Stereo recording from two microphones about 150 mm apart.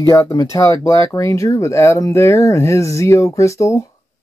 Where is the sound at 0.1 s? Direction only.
20° left (ahead or behind).